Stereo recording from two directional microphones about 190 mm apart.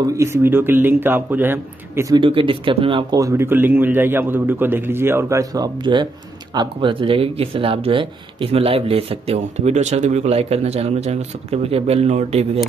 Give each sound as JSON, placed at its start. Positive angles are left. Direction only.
{"t": 0.0, "sound": "speech", "side_deg": -15}
{"t": 2.1, "sound": "speech", "side_deg": -30}